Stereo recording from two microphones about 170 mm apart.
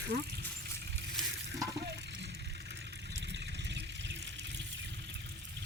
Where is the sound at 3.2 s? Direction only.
90° right.